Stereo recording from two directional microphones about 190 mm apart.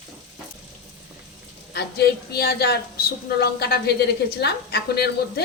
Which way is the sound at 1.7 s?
60° left (ahead or behind).